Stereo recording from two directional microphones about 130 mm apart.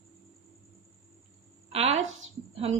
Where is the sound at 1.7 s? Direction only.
55° right (ahead or behind).